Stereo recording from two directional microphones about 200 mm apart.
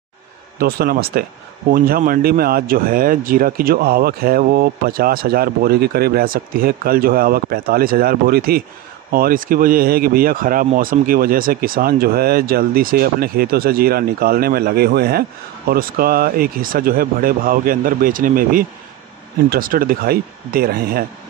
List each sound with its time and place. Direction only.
0.6 s speech: 50° right (ahead or behind)